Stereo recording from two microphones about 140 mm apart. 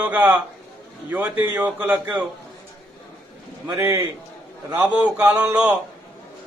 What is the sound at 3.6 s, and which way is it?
Speech, 20° right (ahead or behind).